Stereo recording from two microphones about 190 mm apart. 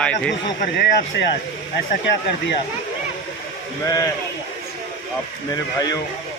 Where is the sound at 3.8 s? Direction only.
20° left (ahead or behind).